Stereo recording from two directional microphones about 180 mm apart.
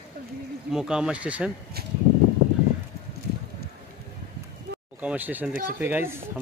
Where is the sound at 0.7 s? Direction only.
5° right (ahead or behind).